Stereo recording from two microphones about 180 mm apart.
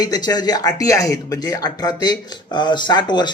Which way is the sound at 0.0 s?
20° left (ahead or behind).